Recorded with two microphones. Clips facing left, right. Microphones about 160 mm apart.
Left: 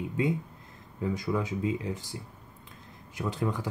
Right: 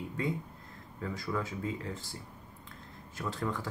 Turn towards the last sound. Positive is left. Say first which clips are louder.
# left 4 dB
turn(degrees=15)  # may be behind; listen again after turning